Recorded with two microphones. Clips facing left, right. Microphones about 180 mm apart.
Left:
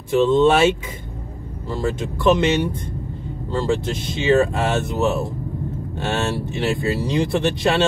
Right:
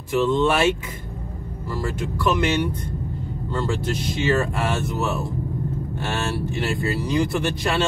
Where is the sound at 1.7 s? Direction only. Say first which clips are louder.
Left 4 dB; 25° left (ahead or behind).